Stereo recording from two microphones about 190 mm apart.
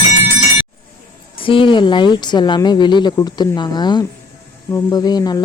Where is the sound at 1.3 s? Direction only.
25° left (ahead or behind).